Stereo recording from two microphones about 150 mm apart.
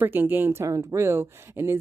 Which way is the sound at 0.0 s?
15° right (ahead or behind).